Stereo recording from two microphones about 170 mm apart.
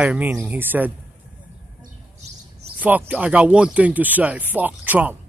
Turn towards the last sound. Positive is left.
turn(degrees=-10)  # may be behind; listen again after turning